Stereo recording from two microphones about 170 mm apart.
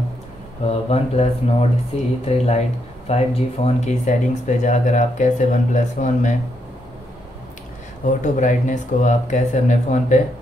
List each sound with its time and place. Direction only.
0.7 s speech: 40° left (ahead or behind)
8.0 s speech: 45° left (ahead or behind)